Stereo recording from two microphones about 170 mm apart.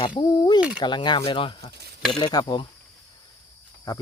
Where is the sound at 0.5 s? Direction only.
5° right (ahead or behind).